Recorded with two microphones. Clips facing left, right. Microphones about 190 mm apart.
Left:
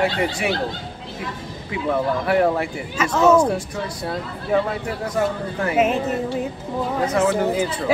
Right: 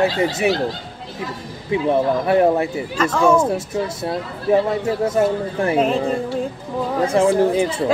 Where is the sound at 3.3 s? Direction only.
25° right (ahead or behind).